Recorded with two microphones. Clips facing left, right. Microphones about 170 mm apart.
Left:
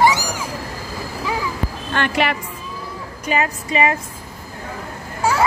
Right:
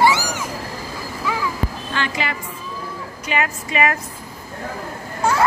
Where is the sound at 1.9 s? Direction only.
60° left (ahead or behind).